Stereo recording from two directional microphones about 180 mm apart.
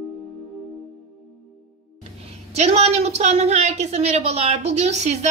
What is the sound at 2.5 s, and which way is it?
A woman's voice, 35° right (ahead or behind).